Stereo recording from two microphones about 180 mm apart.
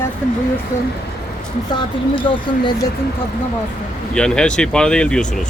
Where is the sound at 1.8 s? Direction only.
30° left (ahead or behind).